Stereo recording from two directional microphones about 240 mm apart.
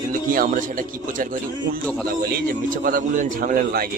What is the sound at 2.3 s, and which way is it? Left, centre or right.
A man's voice, right.